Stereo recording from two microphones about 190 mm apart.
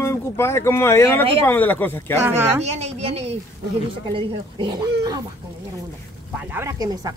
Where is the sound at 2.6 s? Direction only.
35° right (ahead or behind).